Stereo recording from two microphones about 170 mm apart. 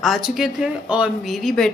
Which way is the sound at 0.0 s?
Centre (ahead or behind).